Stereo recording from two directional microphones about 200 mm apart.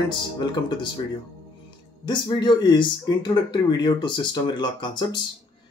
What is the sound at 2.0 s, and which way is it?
Speech, 20° left (ahead or behind).